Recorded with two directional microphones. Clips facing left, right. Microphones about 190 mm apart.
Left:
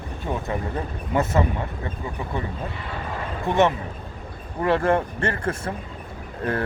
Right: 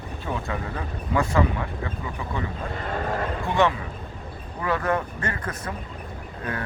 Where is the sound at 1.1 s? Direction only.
20° left (ahead or behind).